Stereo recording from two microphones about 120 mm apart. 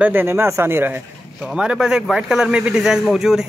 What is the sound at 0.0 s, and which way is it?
Speech, 15° right (ahead or behind).